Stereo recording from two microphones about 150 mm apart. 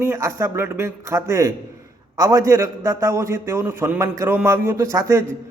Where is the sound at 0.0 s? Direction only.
20° right (ahead or behind).